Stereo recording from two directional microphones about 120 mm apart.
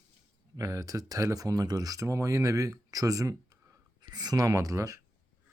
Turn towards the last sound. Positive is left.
turn(degrees=-25)  # may be behind; listen again after turning